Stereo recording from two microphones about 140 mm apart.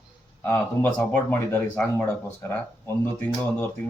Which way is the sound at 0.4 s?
10° left (ahead or behind).